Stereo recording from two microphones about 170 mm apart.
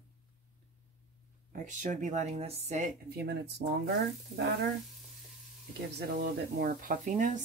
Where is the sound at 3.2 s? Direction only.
80° right.